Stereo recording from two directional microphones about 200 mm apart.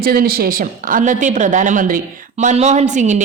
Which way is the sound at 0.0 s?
50° right (ahead or behind).